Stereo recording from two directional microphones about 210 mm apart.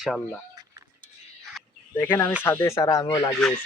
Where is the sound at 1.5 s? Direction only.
10° left (ahead or behind).